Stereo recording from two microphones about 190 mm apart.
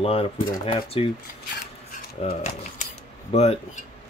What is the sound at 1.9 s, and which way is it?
Speech, 40° left (ahead or behind).